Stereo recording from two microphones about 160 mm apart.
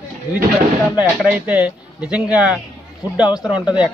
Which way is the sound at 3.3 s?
25° left (ahead or behind).